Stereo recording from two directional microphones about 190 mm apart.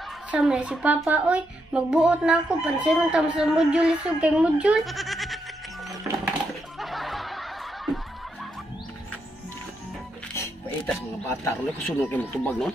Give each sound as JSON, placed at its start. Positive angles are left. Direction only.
{"t": 0.3, "sound": "speech", "side_deg": -5}
{"t": 6.0, "sound": "a sound", "side_deg": -15}
{"t": 6.8, "sound": "snicker", "side_deg": 0}
{"t": 11.2, "sound": "speech", "side_deg": 10}